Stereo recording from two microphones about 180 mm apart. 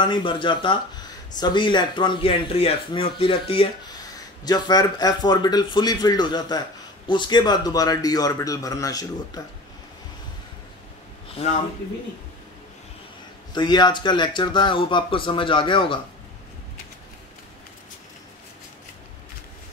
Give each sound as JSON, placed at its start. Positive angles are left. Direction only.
{"t": 0.0, "sound": "speech", "side_deg": 25}
{"t": 13.5, "sound": "speech", "side_deg": 25}